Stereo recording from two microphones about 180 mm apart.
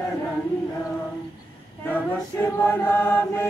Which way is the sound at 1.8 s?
10° left (ahead or behind).